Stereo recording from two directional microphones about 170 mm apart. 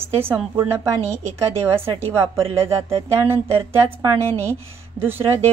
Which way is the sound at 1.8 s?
30° right (ahead or behind).